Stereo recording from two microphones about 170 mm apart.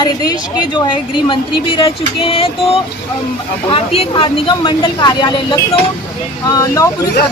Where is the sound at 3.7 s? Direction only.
35° left (ahead or behind); by 7.1 s 20° left (ahead or behind).